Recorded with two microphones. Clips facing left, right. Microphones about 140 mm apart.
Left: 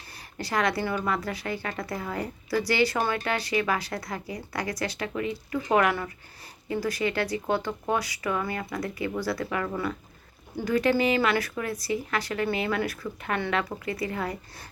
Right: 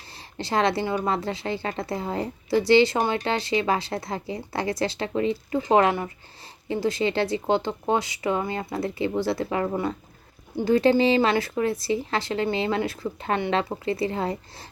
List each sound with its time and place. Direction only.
0.1 s a woman's voice: 25° right (ahead or behind)